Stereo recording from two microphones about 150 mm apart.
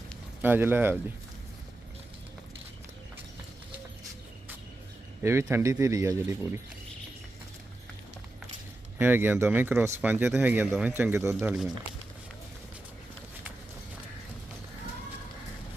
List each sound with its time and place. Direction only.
0.4 s speech: 15° right (ahead or behind)
5.2 s speech: 15° right (ahead or behind)
9.0 s speech: 15° right (ahead or behind)
11.3 s speech: 5° right (ahead or behind)